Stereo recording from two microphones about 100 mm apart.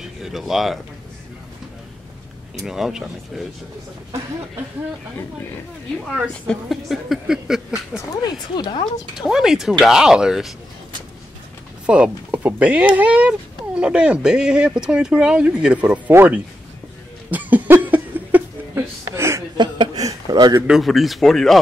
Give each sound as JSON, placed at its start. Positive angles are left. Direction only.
{"t": 0.2, "sound": "speech", "side_deg": -5}
{"t": 2.6, "sound": "speech", "side_deg": -5}
{"t": 6.3, "sound": "speech", "side_deg": 10}
{"t": 8.1, "sound": "speech", "side_deg": 40}
{"t": 9.3, "sound": "speech", "side_deg": -5}
{"t": 11.8, "sound": "speech", "side_deg": -10}
{"t": 16.1, "sound": "speech", "side_deg": -25}
{"t": 17.3, "sound": "a sound", "side_deg": -15}
{"t": 19.5, "sound": "chuckle", "side_deg": -45}
{"t": 20.6, "sound": "speech", "side_deg": 0}